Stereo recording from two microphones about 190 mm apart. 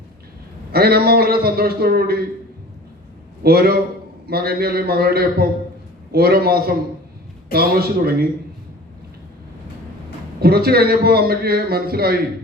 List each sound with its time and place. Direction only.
0.7 s a man's voice: 55° right (ahead or behind)
3.4 s a man's voice: 55° right (ahead or behind)
10.4 s a man's voice: 55° right (ahead or behind)